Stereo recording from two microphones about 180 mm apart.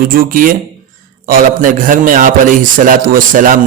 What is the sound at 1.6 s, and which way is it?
A man's voice, 45° right (ahead or behind).